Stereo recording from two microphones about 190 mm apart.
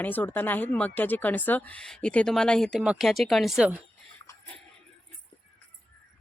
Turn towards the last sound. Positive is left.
turn(degrees=5)  # may be behind; listen again after turning